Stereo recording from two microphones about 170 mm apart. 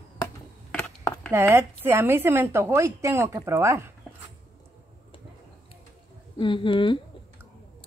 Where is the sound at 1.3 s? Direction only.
15° right (ahead or behind).